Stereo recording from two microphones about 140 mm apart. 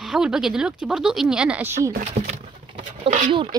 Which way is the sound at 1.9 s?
65° right (ahead or behind).